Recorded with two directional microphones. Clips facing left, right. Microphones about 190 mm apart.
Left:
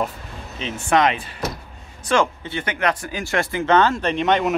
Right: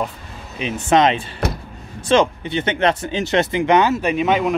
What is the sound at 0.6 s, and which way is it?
Speech, 15° right (ahead or behind).